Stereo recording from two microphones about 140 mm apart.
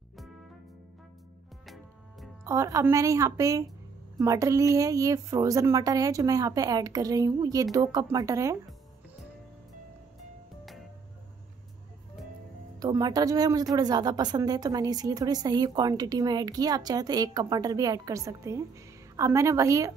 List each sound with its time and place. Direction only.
2.4 s a woman's voice: 20° right (ahead or behind)
12.7 s a woman's voice: 25° right (ahead or behind)